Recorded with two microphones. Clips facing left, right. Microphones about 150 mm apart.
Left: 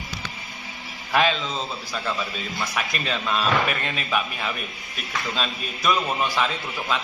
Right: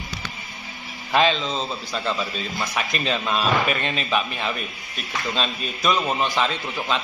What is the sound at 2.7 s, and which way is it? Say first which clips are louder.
Speech: right 4 dB; 20° right (ahead or behind).